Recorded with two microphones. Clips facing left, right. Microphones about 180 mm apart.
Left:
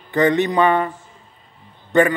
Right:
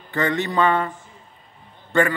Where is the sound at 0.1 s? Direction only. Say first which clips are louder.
Left 6 dB; 20° left (ahead or behind).